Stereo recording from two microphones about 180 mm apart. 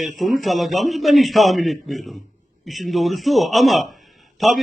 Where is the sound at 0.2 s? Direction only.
Centre (ahead or behind).